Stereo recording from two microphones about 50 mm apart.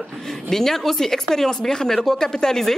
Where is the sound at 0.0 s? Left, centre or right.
Centre.